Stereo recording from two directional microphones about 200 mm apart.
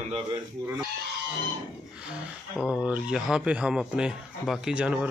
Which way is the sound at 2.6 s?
5° right (ahead or behind).